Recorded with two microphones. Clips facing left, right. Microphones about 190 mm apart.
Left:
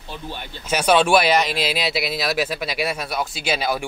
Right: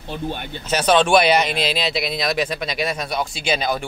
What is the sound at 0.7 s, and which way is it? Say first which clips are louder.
Speech: even; 10° left (ahead or behind).